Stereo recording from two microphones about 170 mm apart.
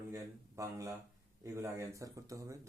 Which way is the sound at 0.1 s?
20° right (ahead or behind).